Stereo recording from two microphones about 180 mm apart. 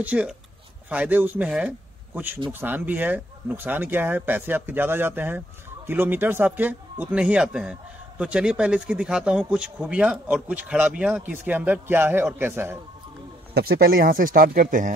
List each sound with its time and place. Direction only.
0.0 s speech: 5° right (ahead or behind)
13.6 s speech: 60° right (ahead or behind)